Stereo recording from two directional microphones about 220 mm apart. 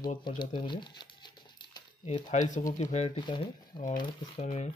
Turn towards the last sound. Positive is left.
turn(degrees=30)  # may be behind; listen again after turning